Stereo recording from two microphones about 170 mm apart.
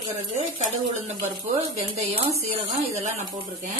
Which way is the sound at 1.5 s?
40° right (ahead or behind).